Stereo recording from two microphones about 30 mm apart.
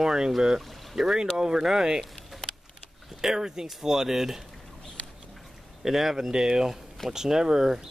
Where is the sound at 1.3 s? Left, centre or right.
Centre.